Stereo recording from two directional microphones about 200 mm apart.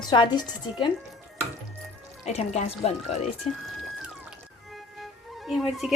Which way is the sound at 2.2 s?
35° left (ahead or behind).